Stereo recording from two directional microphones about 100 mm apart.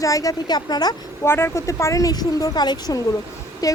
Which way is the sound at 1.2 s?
25° left (ahead or behind).